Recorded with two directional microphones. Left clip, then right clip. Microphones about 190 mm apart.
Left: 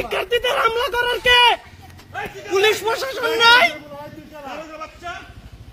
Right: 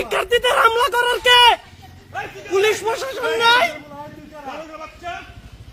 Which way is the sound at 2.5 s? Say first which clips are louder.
Even; 5° right (ahead or behind).